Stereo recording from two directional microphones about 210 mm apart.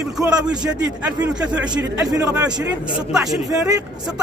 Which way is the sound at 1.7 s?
20° right (ahead or behind).